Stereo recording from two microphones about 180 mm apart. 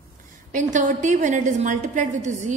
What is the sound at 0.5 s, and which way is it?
A woman's voice, 45° right (ahead or behind).